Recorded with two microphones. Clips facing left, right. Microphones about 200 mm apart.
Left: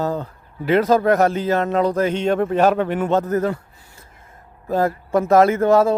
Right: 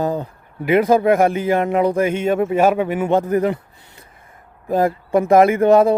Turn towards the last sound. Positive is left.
turn(degrees=-15)  # may be behind; listen again after turning